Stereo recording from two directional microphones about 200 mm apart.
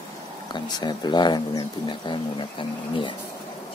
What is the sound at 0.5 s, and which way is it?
Speech, 20° left (ahead or behind).